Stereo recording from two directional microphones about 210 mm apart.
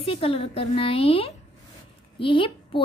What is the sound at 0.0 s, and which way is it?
Speech, 25° left (ahead or behind).